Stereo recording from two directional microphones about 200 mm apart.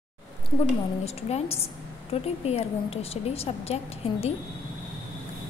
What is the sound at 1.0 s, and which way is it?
A woman's voice, 30° left (ahead or behind).